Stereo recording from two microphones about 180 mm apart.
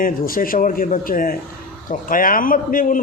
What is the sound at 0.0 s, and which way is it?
A man's voice, 50° left (ahead or behind).